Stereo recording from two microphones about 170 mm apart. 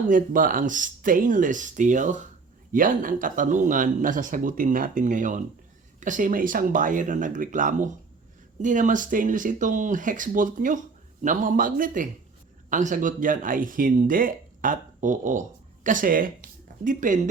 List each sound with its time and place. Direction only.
0.1 s speech: 50° right (ahead or behind)